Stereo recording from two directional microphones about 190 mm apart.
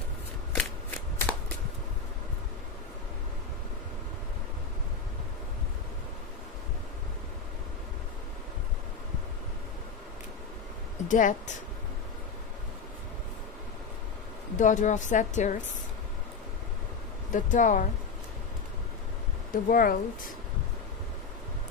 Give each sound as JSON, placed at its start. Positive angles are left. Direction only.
{"t": 0.6, "sound": "shuffling cards", "side_deg": 10}
{"t": 11.1, "sound": "speech", "side_deg": 40}
{"t": 14.6, "sound": "a woman's voice", "side_deg": 40}
{"t": 17.3, "sound": "speech", "side_deg": 40}
{"t": 19.5, "sound": "speech", "side_deg": 50}